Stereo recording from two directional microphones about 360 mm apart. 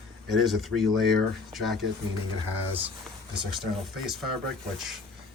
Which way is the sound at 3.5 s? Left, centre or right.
Centre.